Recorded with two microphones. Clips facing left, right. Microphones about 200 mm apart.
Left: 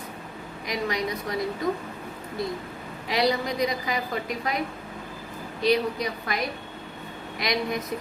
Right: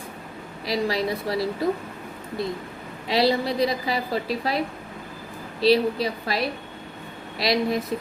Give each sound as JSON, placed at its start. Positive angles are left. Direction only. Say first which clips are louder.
{"t": 0.6, "sound": "a woman's voice", "louder": "right 4 dB", "side_deg": -30}
{"t": 3.1, "sound": "a woman's voice", "louder": "right 3 dB", "side_deg": -30}